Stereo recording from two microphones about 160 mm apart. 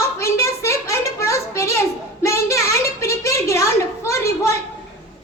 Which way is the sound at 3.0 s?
20° left (ahead or behind).